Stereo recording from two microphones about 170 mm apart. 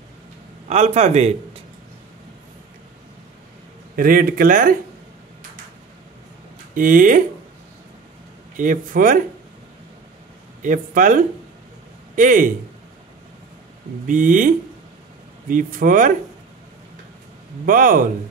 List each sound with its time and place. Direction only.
0.7 s a man's voice: 40° right (ahead or behind)
3.9 s speech: 55° right (ahead or behind)
6.7 s speech: 50° right (ahead or behind)
8.5 s speech: 50° right (ahead or behind)
10.6 s speech: 50° right (ahead or behind)
14.0 s speech: 50° right (ahead or behind)
15.5 s speech: 50° right (ahead or behind)
17.6 s speech: 55° right (ahead or behind)